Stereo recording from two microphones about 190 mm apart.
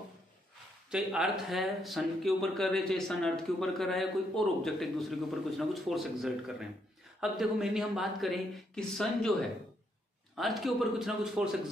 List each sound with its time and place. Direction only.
0.8 s speech: 5° right (ahead or behind)
10.3 s speech: centre (ahead or behind)